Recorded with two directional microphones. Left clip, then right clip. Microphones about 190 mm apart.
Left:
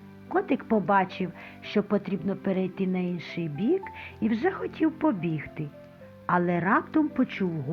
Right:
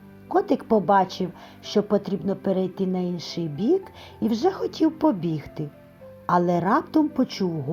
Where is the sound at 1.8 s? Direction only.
25° right (ahead or behind).